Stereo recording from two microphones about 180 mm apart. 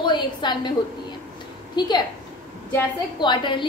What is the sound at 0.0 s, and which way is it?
Speech, 25° left (ahead or behind).